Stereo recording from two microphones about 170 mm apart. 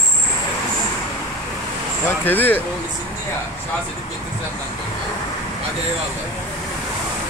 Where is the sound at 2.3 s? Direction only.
10° left (ahead or behind).